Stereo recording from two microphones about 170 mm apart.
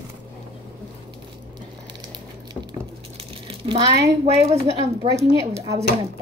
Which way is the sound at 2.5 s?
25° right (ahead or behind).